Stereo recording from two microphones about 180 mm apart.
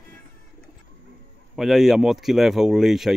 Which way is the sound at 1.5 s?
Centre (ahead or behind).